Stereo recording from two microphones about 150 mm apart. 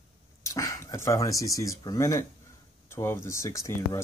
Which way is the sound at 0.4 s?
20° left (ahead or behind).